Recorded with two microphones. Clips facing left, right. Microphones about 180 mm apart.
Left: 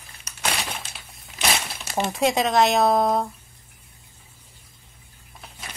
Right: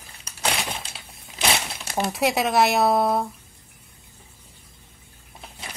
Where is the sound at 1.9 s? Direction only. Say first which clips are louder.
Left 1 dB; 5° right (ahead or behind).